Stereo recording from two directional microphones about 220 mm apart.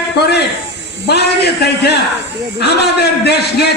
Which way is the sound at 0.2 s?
45° left (ahead or behind).